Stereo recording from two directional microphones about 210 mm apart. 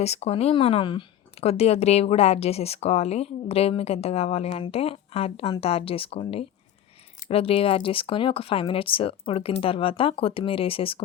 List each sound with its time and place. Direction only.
0.0 s speech: 30° left (ahead or behind)